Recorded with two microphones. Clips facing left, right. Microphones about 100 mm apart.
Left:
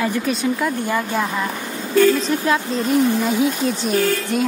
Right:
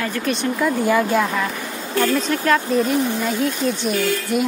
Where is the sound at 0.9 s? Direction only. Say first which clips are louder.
Right 4 dB; 15° left (ahead or behind).